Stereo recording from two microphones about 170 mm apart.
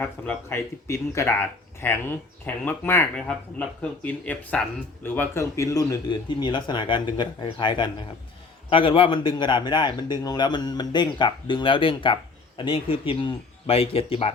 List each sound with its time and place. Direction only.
0.0 s speech: 10° left (ahead or behind); by 14.3 s 35° left (ahead or behind)